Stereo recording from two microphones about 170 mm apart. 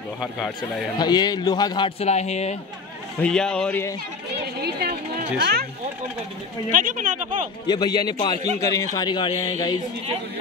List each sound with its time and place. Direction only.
0.9 s a man's voice: 25° left (ahead or behind)
2.0 s speech: 40° left (ahead or behind)
3.2 s a man's voice: 5° left (ahead or behind)
4.6 s speech: 65° right (ahead or behind)
6.7 s speech: 50° right (ahead or behind)
7.6 s a man's voice: 25° left (ahead or behind)